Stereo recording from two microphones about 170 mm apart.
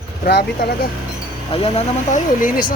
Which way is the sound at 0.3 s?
75° left (ahead or behind).